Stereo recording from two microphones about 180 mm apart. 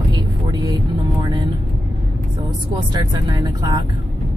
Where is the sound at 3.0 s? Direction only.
25° right (ahead or behind).